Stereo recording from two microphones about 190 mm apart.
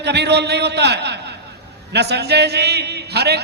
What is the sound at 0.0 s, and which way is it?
A man's voice, 60° right (ahead or behind).